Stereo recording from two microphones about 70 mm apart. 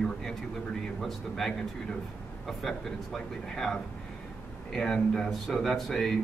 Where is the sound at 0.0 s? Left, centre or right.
Centre.